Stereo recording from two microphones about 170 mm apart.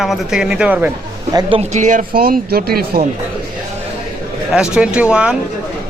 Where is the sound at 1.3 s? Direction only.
35° right (ahead or behind); by 3.0 s 65° right (ahead or behind).